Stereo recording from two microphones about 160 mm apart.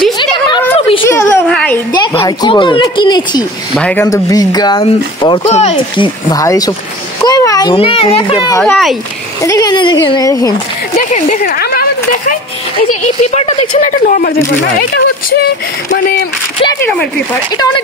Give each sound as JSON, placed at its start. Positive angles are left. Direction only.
{"t": 1.0, "sound": "a sound", "side_deg": 15}
{"t": 1.9, "sound": "a woman's voice", "side_deg": 25}
{"t": 3.7, "sound": "a woman's voice", "side_deg": 10}
{"t": 5.5, "sound": "a child's voice", "side_deg": 40}
{"t": 6.3, "sound": "a woman's voice", "side_deg": 20}
{"t": 7.7, "sound": "a child's voice", "side_deg": 35}
{"t": 8.6, "sound": "speech", "side_deg": 0}
{"t": 9.4, "sound": "a woman's voice", "side_deg": 25}
{"t": 11.0, "sound": "speech", "side_deg": 50}
{"t": 12.8, "sound": "speech", "side_deg": 45}
{"t": 13.7, "sound": "speech", "side_deg": 55}